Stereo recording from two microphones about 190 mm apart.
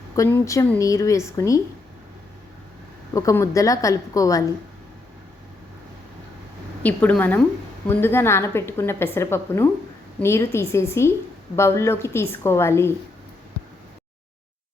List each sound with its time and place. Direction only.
0.2 s a woman's voice: 15° left (ahead or behind)
3.2 s a woman's voice: 15° left (ahead or behind)
6.8 s a woman's voice: 10° left (ahead or behind)